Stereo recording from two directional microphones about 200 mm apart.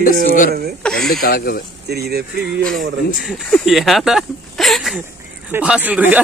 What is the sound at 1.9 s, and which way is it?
Speech, 55° right (ahead or behind).